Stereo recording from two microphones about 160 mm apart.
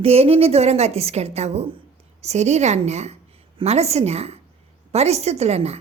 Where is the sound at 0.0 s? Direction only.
40° right (ahead or behind).